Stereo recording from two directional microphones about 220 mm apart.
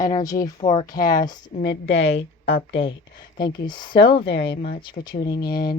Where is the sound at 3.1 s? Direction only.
20° left (ahead or behind).